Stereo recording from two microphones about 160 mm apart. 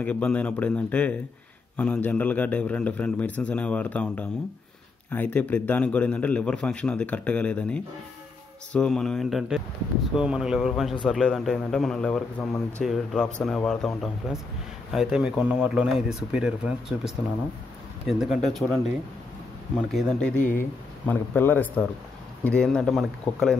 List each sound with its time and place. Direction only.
0.0 s a man's voice: 10° left (ahead or behind)
19.9 s speech: centre (ahead or behind)
20.3 s speech: 55° left (ahead or behind)
21.1 s a man's voice: 10° left (ahead or behind)